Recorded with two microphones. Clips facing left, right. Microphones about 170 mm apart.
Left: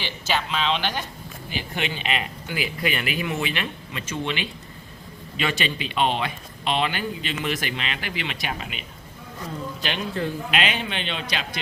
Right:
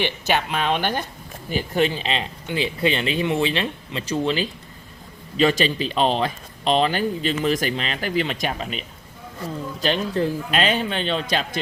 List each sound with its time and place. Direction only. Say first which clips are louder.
0.0 s speech: right 5 dB; 55° right (ahead or behind); by 8.8 s 35° right (ahead or behind)
9.8 s speech: right 6 dB; 35° right (ahead or behind)